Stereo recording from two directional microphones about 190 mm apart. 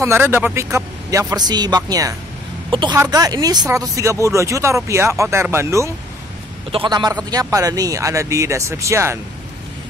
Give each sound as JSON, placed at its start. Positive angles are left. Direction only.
{"t": 0.0, "sound": "speech", "side_deg": -10}